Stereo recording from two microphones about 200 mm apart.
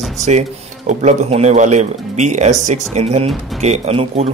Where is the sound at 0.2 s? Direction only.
35° right (ahead or behind).